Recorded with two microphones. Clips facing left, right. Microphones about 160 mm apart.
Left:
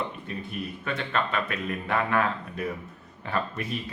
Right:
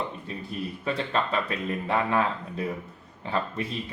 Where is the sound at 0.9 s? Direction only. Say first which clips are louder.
Right 2 dB; 30° right (ahead or behind).